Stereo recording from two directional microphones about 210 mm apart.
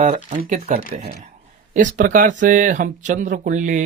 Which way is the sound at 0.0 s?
35° right (ahead or behind).